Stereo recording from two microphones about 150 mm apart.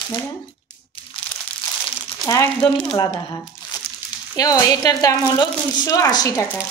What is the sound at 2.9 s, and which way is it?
A woman's voice, 25° left (ahead or behind).